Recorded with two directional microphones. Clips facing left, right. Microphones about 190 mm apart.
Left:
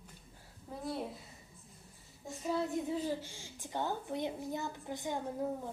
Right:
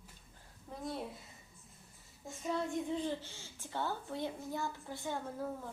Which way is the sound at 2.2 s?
Centre (ahead or behind).